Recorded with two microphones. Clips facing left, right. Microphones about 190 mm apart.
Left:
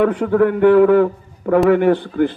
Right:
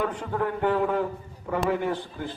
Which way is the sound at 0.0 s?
70° left (ahead or behind).